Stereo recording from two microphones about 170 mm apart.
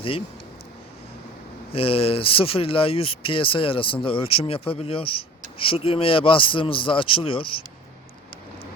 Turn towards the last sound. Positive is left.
turn(degrees=30)  # may be behind; listen again after turning